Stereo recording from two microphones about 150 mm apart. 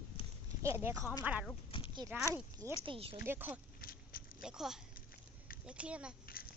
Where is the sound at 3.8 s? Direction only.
80° left.